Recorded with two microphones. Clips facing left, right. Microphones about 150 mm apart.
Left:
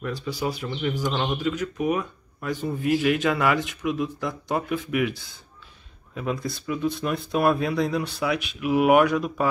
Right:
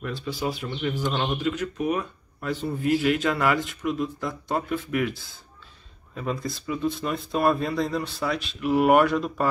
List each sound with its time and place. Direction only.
0.0 s speech: centre (ahead or behind)